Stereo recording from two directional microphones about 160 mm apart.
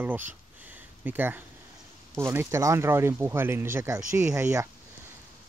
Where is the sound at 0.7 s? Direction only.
10° right (ahead or behind).